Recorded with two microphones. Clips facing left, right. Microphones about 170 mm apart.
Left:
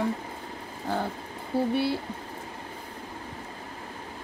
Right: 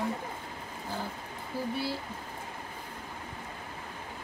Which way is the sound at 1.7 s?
65° left (ahead or behind).